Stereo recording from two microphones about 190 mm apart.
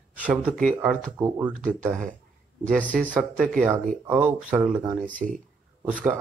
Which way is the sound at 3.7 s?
10° right (ahead or behind).